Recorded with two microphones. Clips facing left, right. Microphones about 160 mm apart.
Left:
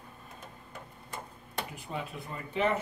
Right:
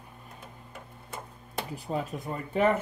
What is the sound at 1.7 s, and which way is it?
Speech, 40° right (ahead or behind).